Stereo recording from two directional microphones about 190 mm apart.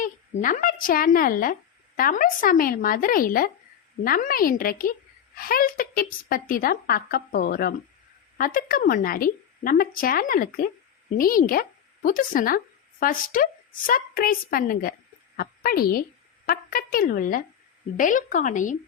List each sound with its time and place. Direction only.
0.0 s a woman's voice: 45° left (ahead or behind)